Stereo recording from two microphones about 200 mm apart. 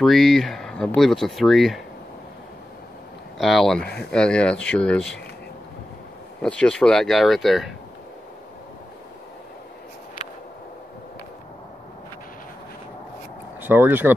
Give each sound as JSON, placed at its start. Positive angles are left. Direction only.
{"t": 0.0, "sound": "speech", "side_deg": 0}
{"t": 3.3, "sound": "speech", "side_deg": 0}
{"t": 6.4, "sound": "speech", "side_deg": 5}
{"t": 13.6, "sound": "speech", "side_deg": -10}